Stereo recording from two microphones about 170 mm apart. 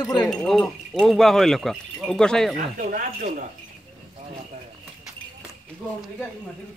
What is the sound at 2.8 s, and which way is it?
Speech, 50° right (ahead or behind).